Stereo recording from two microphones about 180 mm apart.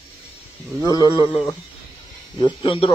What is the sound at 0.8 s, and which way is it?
Speech, 25° left (ahead or behind).